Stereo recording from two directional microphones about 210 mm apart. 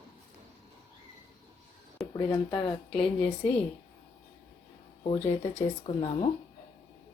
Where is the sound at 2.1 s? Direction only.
20° left (ahead or behind).